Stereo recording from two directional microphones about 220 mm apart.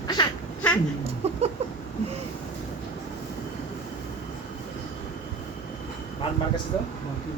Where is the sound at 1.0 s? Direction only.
30° right (ahead or behind).